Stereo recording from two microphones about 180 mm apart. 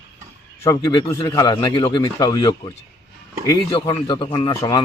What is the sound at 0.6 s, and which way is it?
Speech, 20° left (ahead or behind).